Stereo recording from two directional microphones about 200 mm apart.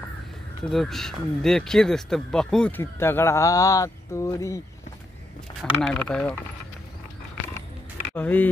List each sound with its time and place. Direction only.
0.7 s speech: centre (ahead or behind)
5.6 s speech: 5° left (ahead or behind)
8.1 s speech: 10° left (ahead or behind)